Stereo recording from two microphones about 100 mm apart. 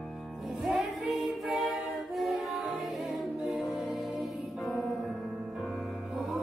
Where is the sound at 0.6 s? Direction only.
Centre (ahead or behind).